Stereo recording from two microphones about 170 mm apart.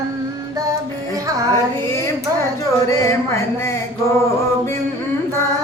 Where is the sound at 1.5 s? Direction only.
15° left (ahead or behind).